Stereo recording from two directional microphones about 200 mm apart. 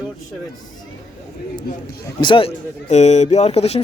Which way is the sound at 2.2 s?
25° left (ahead or behind).